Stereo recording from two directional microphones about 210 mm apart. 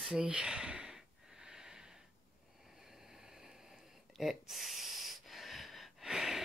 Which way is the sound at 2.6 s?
Centre (ahead or behind).